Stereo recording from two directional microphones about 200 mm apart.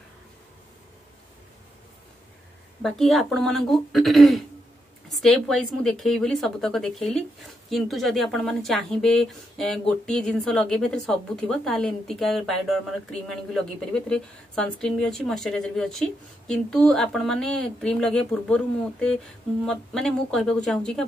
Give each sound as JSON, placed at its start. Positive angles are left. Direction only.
{"t": 2.8, "sound": "speech", "side_deg": 0}